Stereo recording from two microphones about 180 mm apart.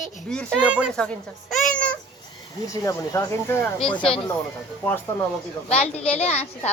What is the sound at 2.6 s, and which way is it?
Speech, 20° left (ahead or behind).